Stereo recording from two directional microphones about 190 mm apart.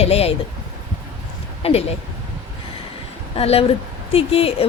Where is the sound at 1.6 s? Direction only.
30° left (ahead or behind).